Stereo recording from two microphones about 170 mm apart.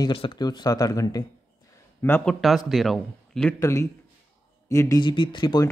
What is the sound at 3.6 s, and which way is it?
Speech, 15° left (ahead or behind).